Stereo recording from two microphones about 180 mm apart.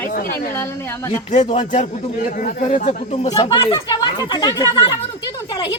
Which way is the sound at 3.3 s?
30° left (ahead or behind).